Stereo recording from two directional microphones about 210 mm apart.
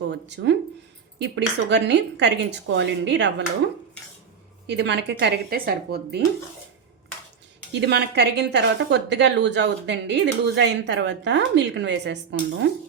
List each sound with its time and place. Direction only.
0.1 s a woman's voice: 55° right (ahead or behind)
4.6 s speech: 55° right (ahead or behind)
7.7 s a woman's voice: 55° right (ahead or behind)